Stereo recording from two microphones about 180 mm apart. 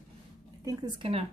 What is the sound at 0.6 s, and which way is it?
Speech, 20° right (ahead or behind).